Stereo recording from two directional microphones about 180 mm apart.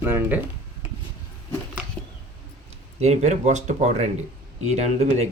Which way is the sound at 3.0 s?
40° right (ahead or behind).